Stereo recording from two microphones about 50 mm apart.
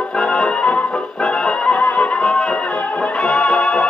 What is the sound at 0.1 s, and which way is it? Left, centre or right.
Music, centre.